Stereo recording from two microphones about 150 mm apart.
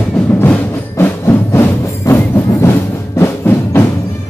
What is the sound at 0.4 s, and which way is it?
Music, 15° left (ahead or behind).